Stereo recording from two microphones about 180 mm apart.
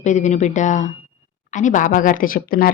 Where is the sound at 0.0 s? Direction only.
40° left (ahead or behind).